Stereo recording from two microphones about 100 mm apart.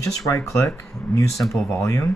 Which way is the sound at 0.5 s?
30° left (ahead or behind).